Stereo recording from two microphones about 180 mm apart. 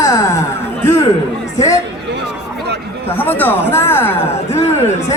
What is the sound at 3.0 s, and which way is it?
Speech, 10° left (ahead or behind).